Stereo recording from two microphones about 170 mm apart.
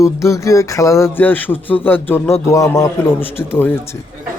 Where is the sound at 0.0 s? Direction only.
20° left (ahead or behind).